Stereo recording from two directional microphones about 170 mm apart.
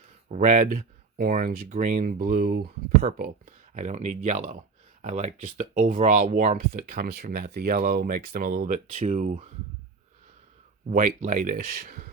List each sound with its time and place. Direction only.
0.3 s speech: 45° right (ahead or behind); by 3.1 s 65° right (ahead or behind)
3.2 s speech: 45° right (ahead or behind)
10.8 s speech: 50° right (ahead or behind)